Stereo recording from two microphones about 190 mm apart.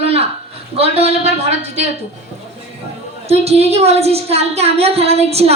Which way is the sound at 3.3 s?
35° right (ahead or behind).